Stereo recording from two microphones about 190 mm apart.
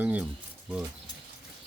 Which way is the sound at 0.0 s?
10° right (ahead or behind).